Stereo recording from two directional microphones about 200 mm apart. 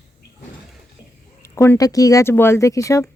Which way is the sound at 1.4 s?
15° left (ahead or behind).